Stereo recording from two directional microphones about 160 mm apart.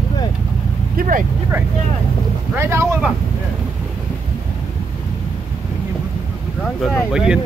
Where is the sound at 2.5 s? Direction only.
15° right (ahead or behind).